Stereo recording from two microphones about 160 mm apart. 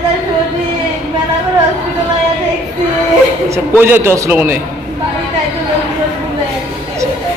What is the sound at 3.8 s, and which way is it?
Speech, 15° right (ahead or behind).